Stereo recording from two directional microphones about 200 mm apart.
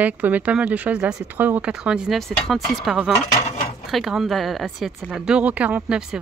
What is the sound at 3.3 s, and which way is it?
Speech, 40° left (ahead or behind).